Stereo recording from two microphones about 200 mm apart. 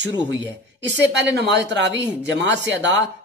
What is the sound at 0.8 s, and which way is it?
Speech, 60° right (ahead or behind).